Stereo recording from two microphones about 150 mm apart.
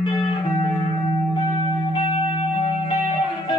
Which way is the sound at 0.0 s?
35° left (ahead or behind).